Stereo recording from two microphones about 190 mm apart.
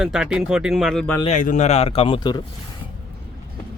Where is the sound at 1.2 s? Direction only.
40° left (ahead or behind); by 2.4 s 25° left (ahead or behind).